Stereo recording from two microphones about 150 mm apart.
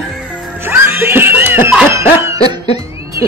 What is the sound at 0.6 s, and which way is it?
Music, 15° right (ahead or behind).